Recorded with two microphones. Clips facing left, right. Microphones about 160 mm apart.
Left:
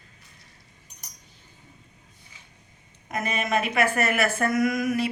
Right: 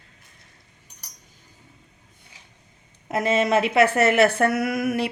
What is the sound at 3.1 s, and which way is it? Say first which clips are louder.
A woman's voice: right 6 dB; 90° right.